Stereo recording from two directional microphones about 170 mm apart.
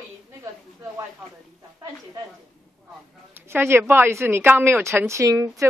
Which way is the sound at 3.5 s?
15° right (ahead or behind).